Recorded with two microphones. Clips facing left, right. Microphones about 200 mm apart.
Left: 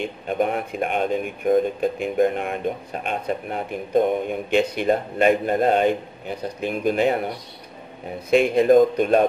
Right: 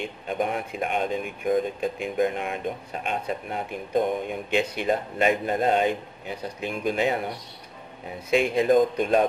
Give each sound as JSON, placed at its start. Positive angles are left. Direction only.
{"t": 0.4, "sound": "speech", "side_deg": 55}
{"t": 8.3, "sound": "speech", "side_deg": 50}